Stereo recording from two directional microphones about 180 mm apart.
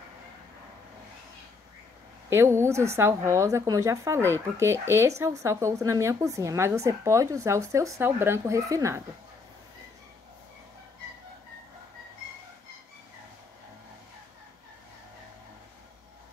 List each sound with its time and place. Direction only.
2.2 s a woman's voice: 15° right (ahead or behind)